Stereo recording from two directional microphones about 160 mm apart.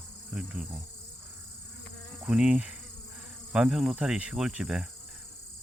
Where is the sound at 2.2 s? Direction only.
5° right (ahead or behind).